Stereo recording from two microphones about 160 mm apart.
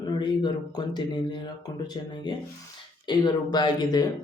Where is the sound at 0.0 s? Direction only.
25° left (ahead or behind).